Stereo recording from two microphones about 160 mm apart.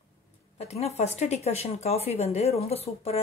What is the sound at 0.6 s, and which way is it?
Speech, 40° left (ahead or behind).